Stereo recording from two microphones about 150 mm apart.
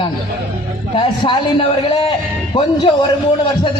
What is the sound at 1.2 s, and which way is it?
Speech, 40° left (ahead or behind).